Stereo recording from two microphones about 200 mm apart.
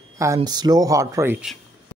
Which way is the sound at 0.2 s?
15° right (ahead or behind).